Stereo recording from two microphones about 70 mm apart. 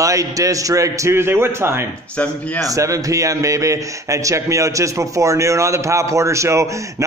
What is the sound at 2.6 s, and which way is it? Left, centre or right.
A man's voice, right.